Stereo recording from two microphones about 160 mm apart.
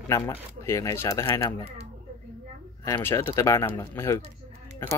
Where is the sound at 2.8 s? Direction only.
15° left (ahead or behind).